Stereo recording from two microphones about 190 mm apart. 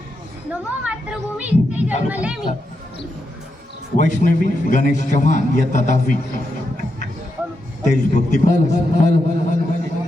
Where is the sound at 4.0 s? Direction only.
45° left (ahead or behind).